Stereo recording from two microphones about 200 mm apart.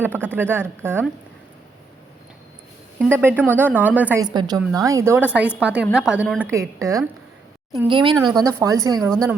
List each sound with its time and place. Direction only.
0.0 s a woman's voice: 10° right (ahead or behind)
3.1 s a woman's voice: 10° right (ahead or behind)
4.2 s a woman's voice: 20° right (ahead or behind); by 6.4 s centre (ahead or behind)
6.4 s a woman's voice: 15° right (ahead or behind)
9.0 s a woman's voice: 5° left (ahead or behind)